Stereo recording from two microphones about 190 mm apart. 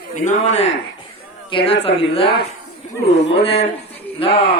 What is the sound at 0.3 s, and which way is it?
Speech, 35° left (ahead or behind).